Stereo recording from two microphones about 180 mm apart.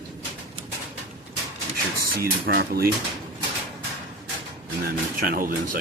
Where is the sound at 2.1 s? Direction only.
55° right (ahead or behind).